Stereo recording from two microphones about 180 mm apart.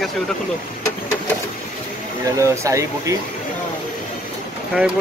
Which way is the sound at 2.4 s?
15° right (ahead or behind).